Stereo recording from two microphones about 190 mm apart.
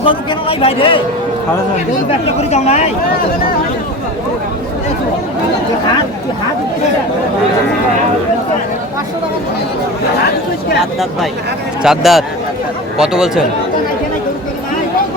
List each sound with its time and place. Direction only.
0.0 s speech: 25° left (ahead or behind)
2.0 s speech: 30° left (ahead or behind)
11.8 s speech: centre (ahead or behind)